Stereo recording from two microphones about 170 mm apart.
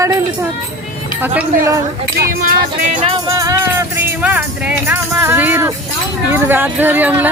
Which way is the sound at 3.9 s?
10° right (ahead or behind).